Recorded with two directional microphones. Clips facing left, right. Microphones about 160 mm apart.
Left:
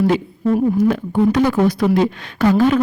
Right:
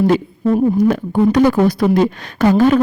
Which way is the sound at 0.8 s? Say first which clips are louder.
Right 2 dB; 40° right (ahead or behind).